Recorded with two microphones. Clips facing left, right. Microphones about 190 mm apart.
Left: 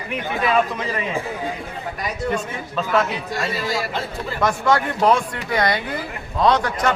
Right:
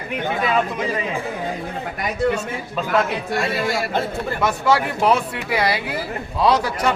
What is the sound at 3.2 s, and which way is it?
Speech, 60° right (ahead or behind).